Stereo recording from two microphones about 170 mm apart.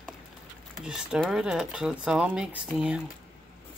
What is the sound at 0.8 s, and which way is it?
Speech, 5° right (ahead or behind).